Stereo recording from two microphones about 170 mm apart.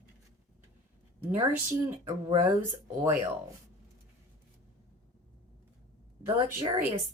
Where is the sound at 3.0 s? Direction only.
15° right (ahead or behind).